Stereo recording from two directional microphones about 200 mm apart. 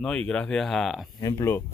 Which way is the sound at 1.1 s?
15° left (ahead or behind).